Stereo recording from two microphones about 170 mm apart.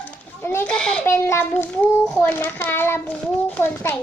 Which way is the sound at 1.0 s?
15° left (ahead or behind).